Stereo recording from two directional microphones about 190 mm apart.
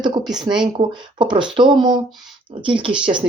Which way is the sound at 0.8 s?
25° right (ahead or behind).